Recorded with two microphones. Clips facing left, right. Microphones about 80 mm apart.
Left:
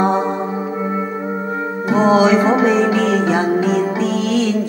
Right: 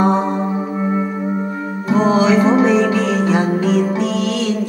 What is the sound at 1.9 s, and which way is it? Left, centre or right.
Music, centre.